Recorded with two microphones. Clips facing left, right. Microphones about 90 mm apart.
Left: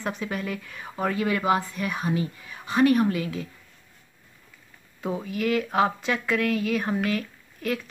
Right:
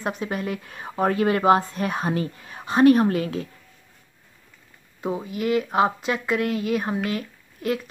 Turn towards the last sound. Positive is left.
turn(degrees=-20)  # may be behind; listen again after turning